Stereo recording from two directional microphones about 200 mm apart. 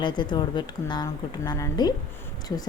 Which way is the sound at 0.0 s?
20° left (ahead or behind).